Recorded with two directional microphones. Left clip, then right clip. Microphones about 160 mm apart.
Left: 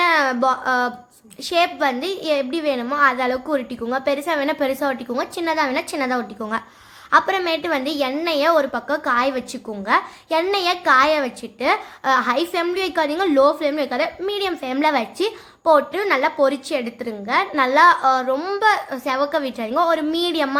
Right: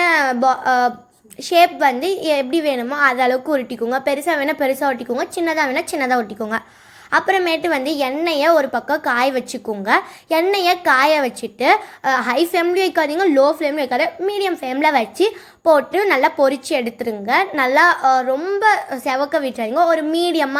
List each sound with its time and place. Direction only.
0.0 s a sound: 15° right (ahead or behind)
1.5 s a child's voice: 15° right (ahead or behind); by 18.7 s centre (ahead or behind)
18.7 s a child's voice: 20° right (ahead or behind)